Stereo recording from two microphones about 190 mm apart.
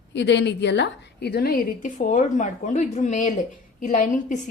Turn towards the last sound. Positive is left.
turn(degrees=40)  # may be behind; listen again after turning